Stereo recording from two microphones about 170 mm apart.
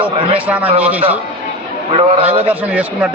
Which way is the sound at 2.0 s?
35° right (ahead or behind).